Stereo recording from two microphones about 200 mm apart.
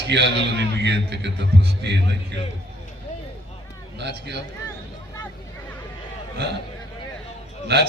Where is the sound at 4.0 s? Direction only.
55° right (ahead or behind).